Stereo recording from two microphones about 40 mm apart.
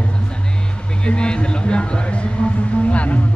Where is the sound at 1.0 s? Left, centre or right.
Left.